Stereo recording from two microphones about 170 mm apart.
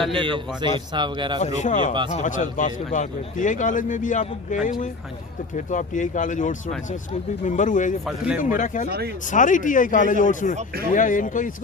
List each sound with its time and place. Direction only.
0.1 s a man's voice: 30° right (ahead or behind)
1.6 s a man's voice: 45° left (ahead or behind)
8.0 s speech: 5° right (ahead or behind)
8.4 s a man's voice: 50° left (ahead or behind)